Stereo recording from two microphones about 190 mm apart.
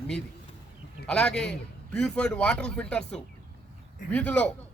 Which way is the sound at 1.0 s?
5° left (ahead or behind).